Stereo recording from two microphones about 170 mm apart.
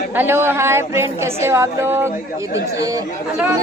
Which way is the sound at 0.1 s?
10° right (ahead or behind).